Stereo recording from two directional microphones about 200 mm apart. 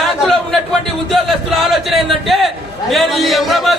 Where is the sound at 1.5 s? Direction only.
Centre (ahead or behind).